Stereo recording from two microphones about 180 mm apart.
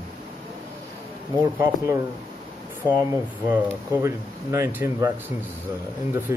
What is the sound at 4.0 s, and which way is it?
Speech, 15° right (ahead or behind).